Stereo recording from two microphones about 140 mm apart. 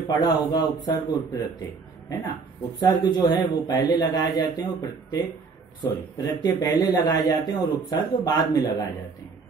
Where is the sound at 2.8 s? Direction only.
30° left (ahead or behind).